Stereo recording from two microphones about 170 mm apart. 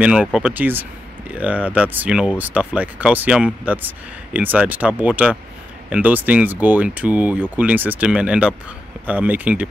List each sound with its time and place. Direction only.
0.0 s speech: 5° right (ahead or behind)